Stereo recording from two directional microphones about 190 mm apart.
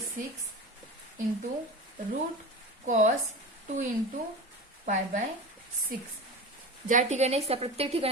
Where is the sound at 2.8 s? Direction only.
40° right (ahead or behind).